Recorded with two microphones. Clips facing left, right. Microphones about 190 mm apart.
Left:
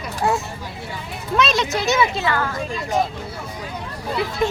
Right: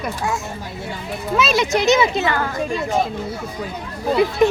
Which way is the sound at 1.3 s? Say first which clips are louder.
Right 2 dB; 5° right (ahead or behind).